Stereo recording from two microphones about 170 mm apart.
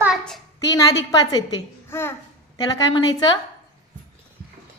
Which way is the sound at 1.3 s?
20° left (ahead or behind).